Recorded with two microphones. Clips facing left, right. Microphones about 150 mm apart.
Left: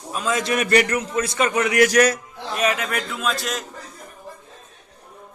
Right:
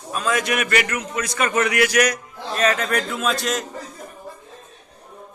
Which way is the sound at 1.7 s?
40° left (ahead or behind).